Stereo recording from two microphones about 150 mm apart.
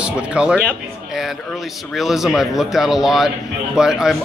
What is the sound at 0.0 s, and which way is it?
Speech, 5° right (ahead or behind).